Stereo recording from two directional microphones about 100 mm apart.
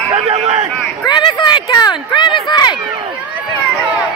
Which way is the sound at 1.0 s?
50° left (ahead or behind).